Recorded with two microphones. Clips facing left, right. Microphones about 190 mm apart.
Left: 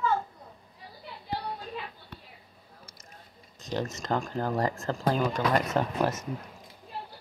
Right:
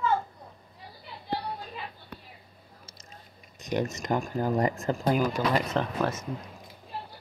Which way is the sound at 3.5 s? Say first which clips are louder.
Right 3 dB; 15° right (ahead or behind).